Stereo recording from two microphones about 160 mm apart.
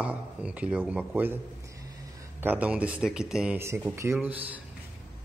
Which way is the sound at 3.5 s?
15° right (ahead or behind).